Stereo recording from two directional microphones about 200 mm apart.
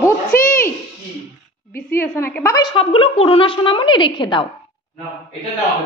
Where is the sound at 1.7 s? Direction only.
15° left (ahead or behind).